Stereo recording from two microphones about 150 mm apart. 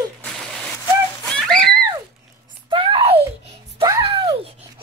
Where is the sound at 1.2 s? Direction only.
5° left (ahead or behind).